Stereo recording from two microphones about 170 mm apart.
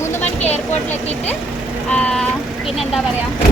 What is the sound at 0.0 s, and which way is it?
Vehicle, 15° left (ahead or behind).